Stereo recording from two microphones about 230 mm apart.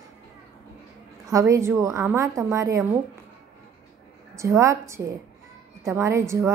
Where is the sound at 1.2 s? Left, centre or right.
Centre.